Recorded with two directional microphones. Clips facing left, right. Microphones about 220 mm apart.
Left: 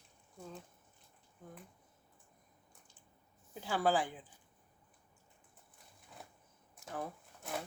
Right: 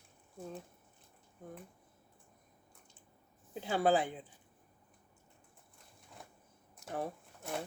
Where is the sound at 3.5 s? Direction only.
20° right (ahead or behind).